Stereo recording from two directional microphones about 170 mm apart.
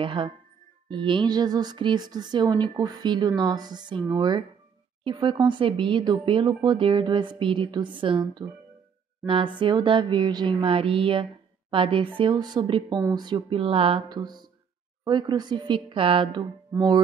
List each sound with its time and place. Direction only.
0.0 s a woman's voice: 30° right (ahead or behind)